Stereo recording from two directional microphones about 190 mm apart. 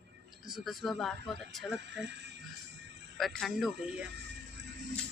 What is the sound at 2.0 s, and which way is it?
Music, 65° right (ahead or behind).